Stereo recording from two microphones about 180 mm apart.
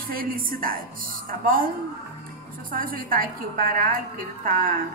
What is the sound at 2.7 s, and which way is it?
A woman's voice, 50° right (ahead or behind).